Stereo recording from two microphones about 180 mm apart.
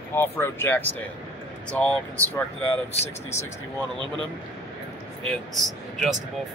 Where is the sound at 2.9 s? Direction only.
35° left (ahead or behind).